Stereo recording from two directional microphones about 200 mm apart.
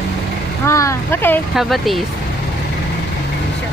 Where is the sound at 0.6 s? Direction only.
15° left (ahead or behind).